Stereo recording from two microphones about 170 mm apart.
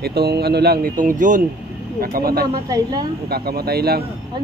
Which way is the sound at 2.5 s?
25° right (ahead or behind).